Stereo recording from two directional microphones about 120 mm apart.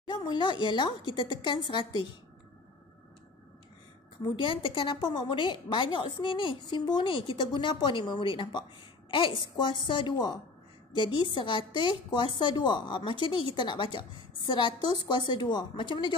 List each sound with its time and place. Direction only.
0.1 s a woman's voice: 40° left (ahead or behind)
4.2 s a woman's voice: 45° left (ahead or behind)